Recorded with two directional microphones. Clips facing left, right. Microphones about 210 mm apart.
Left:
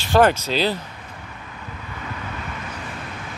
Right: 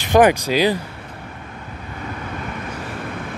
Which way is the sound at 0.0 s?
15° right (ahead or behind).